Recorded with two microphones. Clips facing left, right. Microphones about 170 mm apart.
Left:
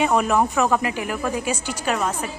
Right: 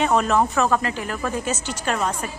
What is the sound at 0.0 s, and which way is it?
Speech, 10° left (ahead or behind).